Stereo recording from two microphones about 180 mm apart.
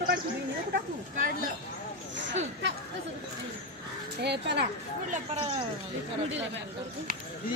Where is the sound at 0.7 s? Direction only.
50° right (ahead or behind).